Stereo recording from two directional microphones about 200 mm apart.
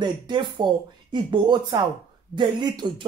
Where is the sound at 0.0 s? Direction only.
25° right (ahead or behind).